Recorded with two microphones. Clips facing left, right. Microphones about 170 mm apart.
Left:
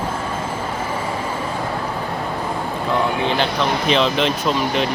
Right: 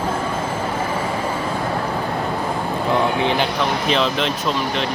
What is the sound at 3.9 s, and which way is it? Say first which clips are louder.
Speech: left 3 dB; centre (ahead or behind).